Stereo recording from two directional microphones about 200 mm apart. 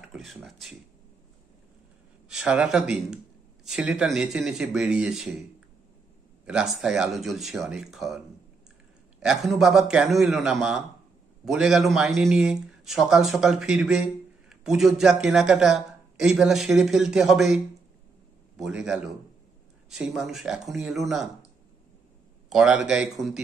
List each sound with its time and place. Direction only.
0.1 s a sound: centre (ahead or behind)
2.2 s speech: 5° right (ahead or behind)
6.4 s speech: 5° right (ahead or behind)
9.2 s speech: centre (ahead or behind)
18.6 s speech: 5° right (ahead or behind)
22.5 s speech: centre (ahead or behind)